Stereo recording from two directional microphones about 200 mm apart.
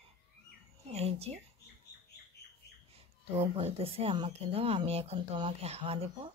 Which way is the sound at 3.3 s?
30° right (ahead or behind).